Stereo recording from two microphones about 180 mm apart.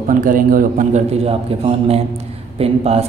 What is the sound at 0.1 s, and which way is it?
A man's voice, 50° right (ahead or behind).